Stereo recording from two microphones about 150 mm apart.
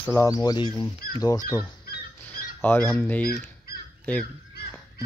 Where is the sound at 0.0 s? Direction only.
20° left (ahead or behind).